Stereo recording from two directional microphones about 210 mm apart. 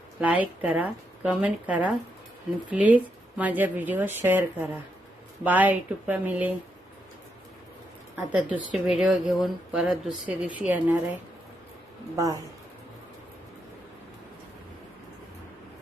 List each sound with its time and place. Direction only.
0.2 s speech: 5° right (ahead or behind)
8.1 s a woman's voice: 5° right (ahead or behind)
12.1 s speech: 15° right (ahead or behind)